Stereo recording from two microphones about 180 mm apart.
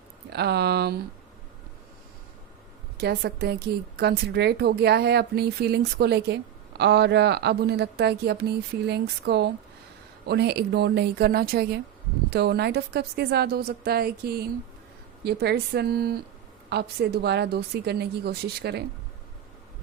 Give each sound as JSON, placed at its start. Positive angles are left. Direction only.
{"t": 0.3, "sound": "a woman's voice", "side_deg": -65}
{"t": 3.0, "sound": "a woman's voice", "side_deg": -60}